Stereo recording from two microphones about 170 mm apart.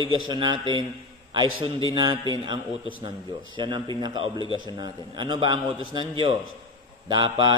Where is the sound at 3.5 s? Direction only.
25° right (ahead or behind).